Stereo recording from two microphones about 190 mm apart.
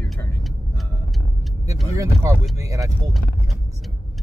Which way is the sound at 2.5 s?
15° right (ahead or behind).